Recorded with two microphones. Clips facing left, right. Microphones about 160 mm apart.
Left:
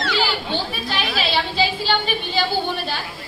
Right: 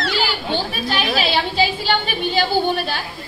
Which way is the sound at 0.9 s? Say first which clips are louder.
Right 4 dB; 55° right (ahead or behind).